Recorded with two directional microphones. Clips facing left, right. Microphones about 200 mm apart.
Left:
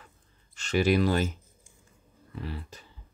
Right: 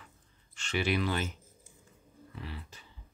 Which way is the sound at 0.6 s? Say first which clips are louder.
Left 7 dB; 40° left (ahead or behind).